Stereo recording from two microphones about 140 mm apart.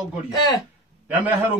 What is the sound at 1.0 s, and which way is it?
Speech, 10° right (ahead or behind).